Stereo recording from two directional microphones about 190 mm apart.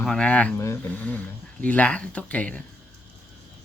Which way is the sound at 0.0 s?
5° left (ahead or behind).